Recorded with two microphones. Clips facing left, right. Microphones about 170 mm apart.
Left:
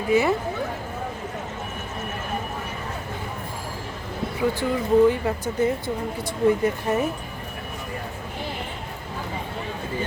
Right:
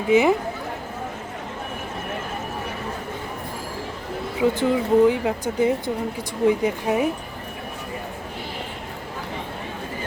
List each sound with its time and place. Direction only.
0.1 s speech: 20° right (ahead or behind)
4.4 s speech: 15° right (ahead or behind)